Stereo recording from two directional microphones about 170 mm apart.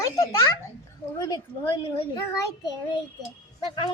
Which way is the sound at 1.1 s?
25° left (ahead or behind).